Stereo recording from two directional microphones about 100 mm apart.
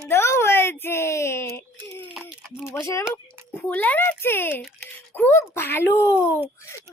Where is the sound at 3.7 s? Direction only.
15° left (ahead or behind).